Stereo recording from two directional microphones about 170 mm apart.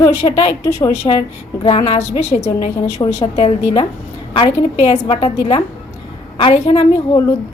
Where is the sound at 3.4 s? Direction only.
35° left (ahead or behind).